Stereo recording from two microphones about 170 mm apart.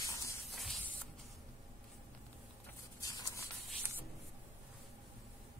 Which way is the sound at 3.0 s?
20° left (ahead or behind).